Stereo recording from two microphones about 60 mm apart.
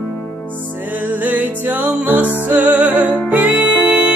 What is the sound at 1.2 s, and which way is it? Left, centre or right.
Music, right.